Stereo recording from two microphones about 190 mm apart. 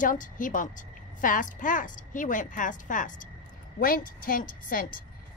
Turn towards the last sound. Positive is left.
turn(degrees=50)  # may be behind; listen again after turning